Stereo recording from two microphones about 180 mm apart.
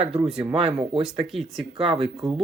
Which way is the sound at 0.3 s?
35° right (ahead or behind).